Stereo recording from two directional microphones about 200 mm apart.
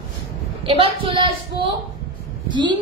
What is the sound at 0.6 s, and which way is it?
A woman's voice, 25° right (ahead or behind).